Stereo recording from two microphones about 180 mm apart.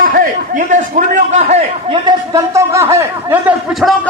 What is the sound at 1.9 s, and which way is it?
Speech, 20° right (ahead or behind).